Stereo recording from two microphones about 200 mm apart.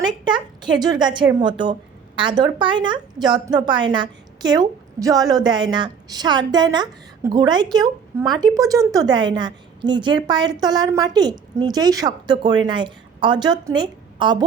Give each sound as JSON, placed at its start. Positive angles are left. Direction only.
{"t": 0.1, "sound": "a woman's voice", "side_deg": -20}